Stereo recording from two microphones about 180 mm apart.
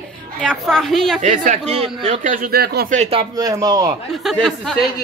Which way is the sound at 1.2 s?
45° right (ahead or behind).